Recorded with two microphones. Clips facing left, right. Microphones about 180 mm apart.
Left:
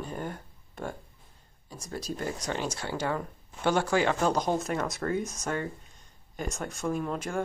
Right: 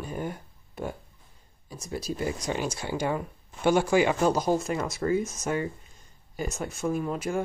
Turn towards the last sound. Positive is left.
turn(degrees=-5)  # may be behind; listen again after turning